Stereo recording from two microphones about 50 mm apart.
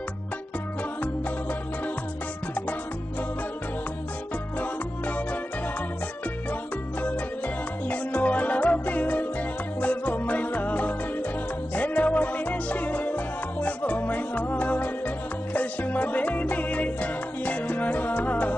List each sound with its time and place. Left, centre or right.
4.6 s music: left
7.0 s music: left